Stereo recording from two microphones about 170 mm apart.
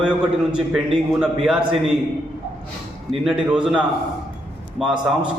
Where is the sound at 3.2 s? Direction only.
5° right (ahead or behind).